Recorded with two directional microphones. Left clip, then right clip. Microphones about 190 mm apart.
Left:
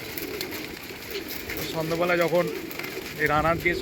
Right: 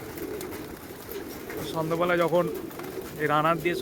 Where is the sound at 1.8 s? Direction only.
Centre (ahead or behind).